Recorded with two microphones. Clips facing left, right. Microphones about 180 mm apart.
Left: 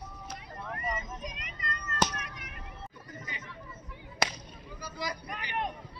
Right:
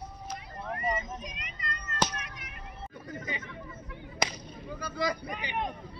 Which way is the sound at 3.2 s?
60° right (ahead or behind).